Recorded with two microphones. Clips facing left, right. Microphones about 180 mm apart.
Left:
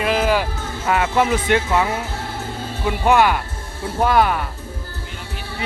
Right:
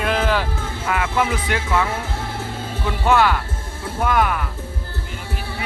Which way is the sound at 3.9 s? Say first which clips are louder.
Left 3 dB; 30° left (ahead or behind).